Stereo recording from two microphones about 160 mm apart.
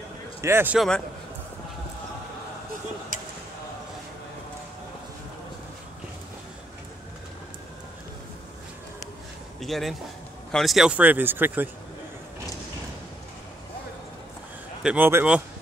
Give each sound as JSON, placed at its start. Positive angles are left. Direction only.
{"t": 0.4, "sound": "speech", "side_deg": -15}
{"t": 0.7, "sound": "a man's voice", "side_deg": 5}
{"t": 9.6, "sound": "speech", "side_deg": 0}
{"t": 14.8, "sound": "speech", "side_deg": -10}